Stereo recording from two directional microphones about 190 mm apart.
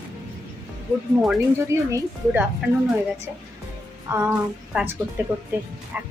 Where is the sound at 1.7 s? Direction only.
15° right (ahead or behind).